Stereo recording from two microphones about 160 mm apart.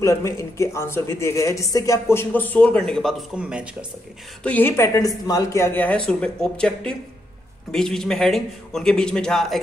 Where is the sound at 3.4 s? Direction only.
5° right (ahead or behind).